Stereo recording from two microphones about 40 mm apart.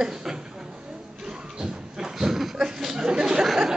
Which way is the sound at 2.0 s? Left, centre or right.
Centre.